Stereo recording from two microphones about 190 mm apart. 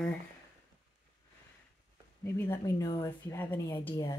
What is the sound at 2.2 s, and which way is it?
A woman's voice, 15° left (ahead or behind).